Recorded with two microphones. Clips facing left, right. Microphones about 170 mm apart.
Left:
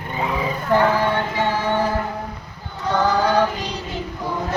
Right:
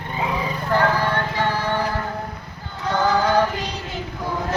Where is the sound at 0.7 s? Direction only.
15° left (ahead or behind).